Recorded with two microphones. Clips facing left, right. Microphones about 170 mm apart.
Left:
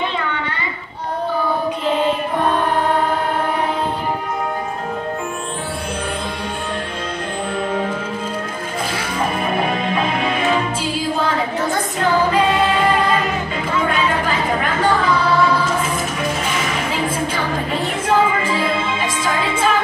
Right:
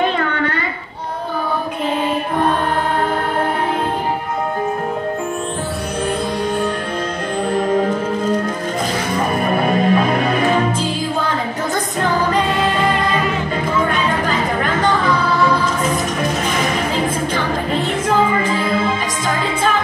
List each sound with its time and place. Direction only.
9.3 s music: 40° right (ahead or behind)